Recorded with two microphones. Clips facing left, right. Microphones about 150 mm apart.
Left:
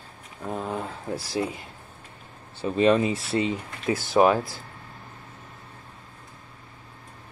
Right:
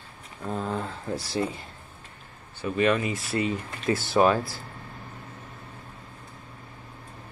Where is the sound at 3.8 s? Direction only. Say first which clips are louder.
Left 2 dB; 15° left (ahead or behind).